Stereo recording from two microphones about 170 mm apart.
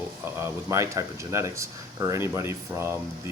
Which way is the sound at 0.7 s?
15° right (ahead or behind).